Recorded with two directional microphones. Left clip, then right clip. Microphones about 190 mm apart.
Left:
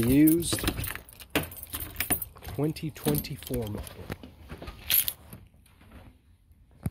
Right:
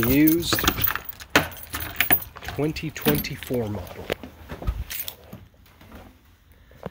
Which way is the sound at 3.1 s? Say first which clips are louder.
Right 6 dB; 20° left (ahead or behind).